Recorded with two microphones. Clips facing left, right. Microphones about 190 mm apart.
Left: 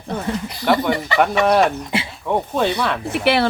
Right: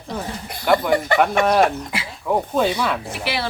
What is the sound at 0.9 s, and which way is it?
Speech, 50° right (ahead or behind).